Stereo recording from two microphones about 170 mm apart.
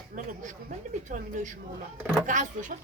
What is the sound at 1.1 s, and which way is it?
Speech, 50° right (ahead or behind).